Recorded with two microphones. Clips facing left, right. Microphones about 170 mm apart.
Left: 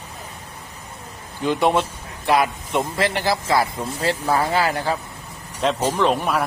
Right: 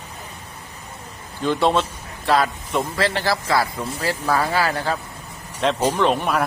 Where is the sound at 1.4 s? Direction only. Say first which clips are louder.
Even; 15° left (ahead or behind).